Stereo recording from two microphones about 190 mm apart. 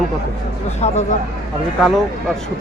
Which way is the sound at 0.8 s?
35° left (ahead or behind).